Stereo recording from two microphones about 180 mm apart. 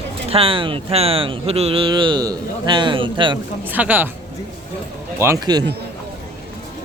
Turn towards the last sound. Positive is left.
turn(degrees=-20)  # may be behind; listen again after turning